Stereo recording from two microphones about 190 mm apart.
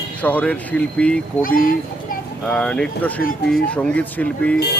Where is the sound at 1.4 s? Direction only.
45° left (ahead or behind).